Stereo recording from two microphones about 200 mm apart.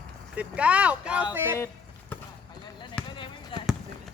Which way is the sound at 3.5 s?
25° left (ahead or behind).